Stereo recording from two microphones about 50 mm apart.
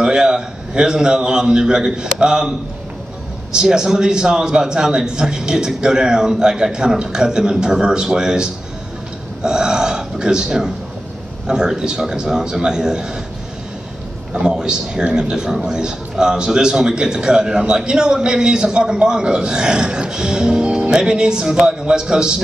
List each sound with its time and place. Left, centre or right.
0.0 s a man's voice: centre
3.5 s a man's voice: centre
14.3 s a man's voice: centre